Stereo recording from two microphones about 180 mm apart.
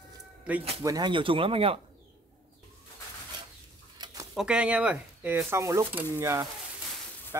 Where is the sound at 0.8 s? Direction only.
20° right (ahead or behind).